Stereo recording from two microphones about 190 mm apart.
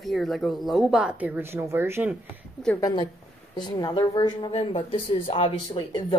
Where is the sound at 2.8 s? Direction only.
20° left (ahead or behind).